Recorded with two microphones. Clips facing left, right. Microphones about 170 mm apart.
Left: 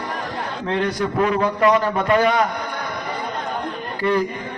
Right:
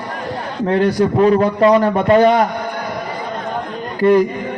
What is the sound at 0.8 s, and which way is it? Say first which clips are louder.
A man's voice: right 7 dB; 35° right (ahead or behind).